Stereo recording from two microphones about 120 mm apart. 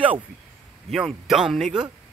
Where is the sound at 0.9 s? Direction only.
5° right (ahead or behind).